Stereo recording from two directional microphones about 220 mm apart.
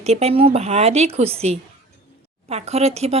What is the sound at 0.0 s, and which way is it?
Speech, 30° right (ahead or behind).